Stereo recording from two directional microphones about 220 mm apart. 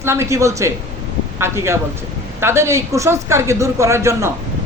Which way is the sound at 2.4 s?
10° right (ahead or behind).